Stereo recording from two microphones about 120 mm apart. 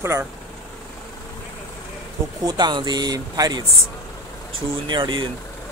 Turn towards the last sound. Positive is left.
turn(degrees=-40)  # may be behind; listen again after turning